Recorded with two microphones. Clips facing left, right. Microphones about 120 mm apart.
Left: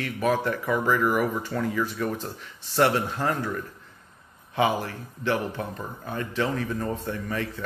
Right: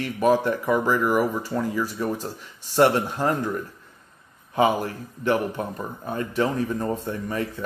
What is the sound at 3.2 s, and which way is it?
Speech, 15° right (ahead or behind).